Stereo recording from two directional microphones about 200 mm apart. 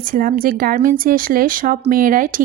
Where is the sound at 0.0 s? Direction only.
45° right (ahead or behind).